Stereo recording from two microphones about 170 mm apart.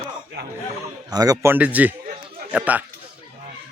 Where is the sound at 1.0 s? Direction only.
20° right (ahead or behind).